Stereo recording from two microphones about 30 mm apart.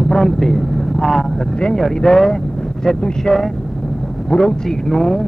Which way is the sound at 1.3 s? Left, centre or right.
Left.